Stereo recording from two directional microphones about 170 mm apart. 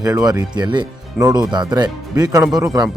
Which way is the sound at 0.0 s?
20° right (ahead or behind).